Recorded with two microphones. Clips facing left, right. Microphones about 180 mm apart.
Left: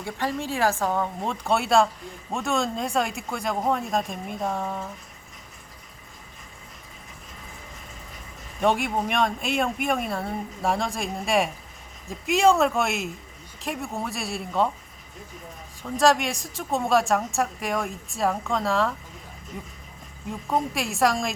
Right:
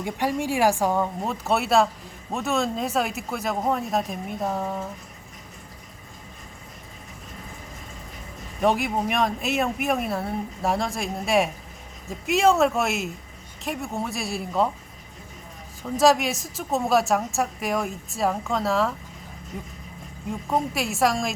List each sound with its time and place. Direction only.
0.0 s a woman's voice: 15° right (ahead or behind)
8.6 s a woman's voice: centre (ahead or behind)
15.8 s a woman's voice: 5° right (ahead or behind)
20.3 s a woman's voice: centre (ahead or behind)